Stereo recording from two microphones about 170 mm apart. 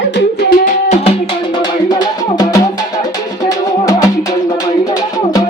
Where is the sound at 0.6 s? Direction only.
40° left (ahead or behind).